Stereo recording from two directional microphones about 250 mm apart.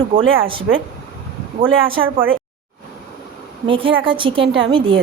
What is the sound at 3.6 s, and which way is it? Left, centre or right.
Speech, right.